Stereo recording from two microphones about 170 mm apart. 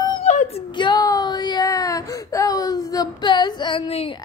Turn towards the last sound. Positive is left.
turn(degrees=30)  # may be behind; listen again after turning